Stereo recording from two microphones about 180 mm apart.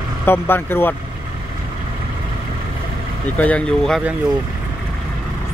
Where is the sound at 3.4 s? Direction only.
5° left (ahead or behind).